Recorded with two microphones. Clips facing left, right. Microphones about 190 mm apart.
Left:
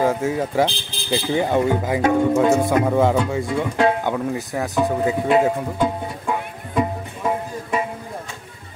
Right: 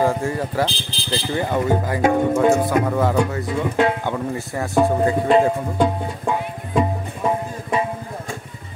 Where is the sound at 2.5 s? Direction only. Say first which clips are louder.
Left 1 dB; 15° left (ahead or behind).